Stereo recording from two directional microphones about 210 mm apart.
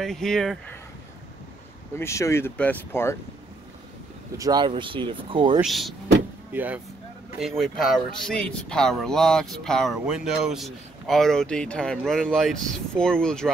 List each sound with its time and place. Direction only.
0.0 s speech: centre (ahead or behind)
2.0 s speech: 15° left (ahead or behind)
4.4 s speech: 20° right (ahead or behind)
5.6 s speech: centre (ahead or behind)